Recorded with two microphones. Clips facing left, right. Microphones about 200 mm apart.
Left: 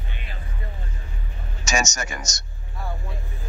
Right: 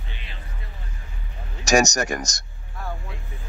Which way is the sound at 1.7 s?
40° right (ahead or behind).